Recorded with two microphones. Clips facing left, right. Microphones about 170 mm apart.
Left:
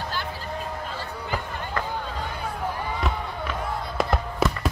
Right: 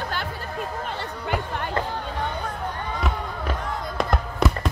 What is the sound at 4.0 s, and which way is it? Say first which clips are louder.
Music: even; centre (ahead or behind).